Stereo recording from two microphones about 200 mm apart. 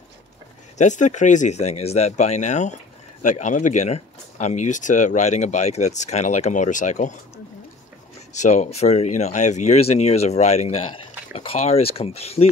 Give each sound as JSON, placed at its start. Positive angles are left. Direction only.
{"t": 0.7, "sound": "speech", "side_deg": 35}
{"t": 8.3, "sound": "speech", "side_deg": 35}